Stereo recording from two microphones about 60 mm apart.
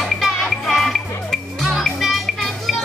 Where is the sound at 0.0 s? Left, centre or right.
Centre.